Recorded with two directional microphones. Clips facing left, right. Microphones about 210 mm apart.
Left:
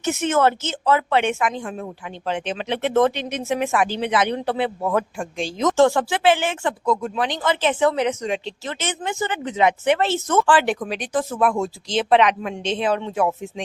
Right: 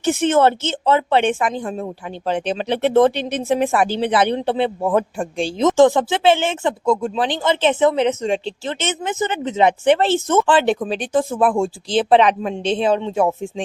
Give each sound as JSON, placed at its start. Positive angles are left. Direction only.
{"t": 0.0, "sound": "a woman's voice", "side_deg": -30}
{"t": 5.7, "sound": "speech", "side_deg": -15}